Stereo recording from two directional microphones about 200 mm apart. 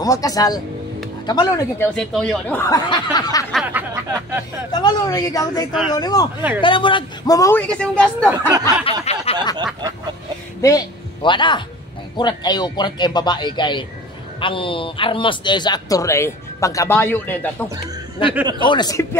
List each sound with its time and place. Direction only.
0.0 s a man's voice: 15° left (ahead or behind)
2.0 s speech: 5° left (ahead or behind)
3.5 s speech: 10° right (ahead or behind)
4.7 s a man's voice: 20° left (ahead or behind)
8.5 s a sound: 20° right (ahead or behind)
9.0 s a sound: 30° left (ahead or behind)
10.6 s a man's voice: 15° left (ahead or behind)
18.6 s a man's voice: 20° left (ahead or behind)